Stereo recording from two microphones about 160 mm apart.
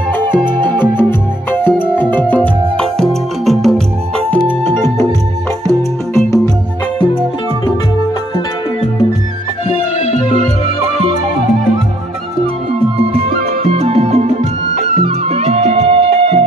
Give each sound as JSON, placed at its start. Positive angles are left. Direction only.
{"t": 0.2, "sound": "music", "side_deg": 15}
{"t": 4.5, "sound": "music", "side_deg": 15}
{"t": 12.9, "sound": "music", "side_deg": -40}